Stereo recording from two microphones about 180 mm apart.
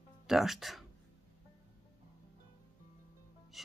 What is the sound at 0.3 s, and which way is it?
Speech, centre (ahead or behind).